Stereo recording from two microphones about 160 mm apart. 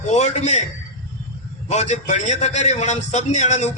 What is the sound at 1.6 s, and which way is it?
A man's voice, 45° left (ahead or behind).